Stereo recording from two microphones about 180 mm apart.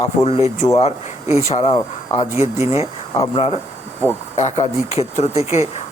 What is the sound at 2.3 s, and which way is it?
Speech, 15° right (ahead or behind).